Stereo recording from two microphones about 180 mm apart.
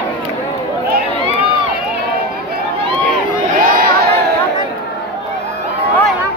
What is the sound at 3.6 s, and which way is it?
Crowd, 50° right (ahead or behind).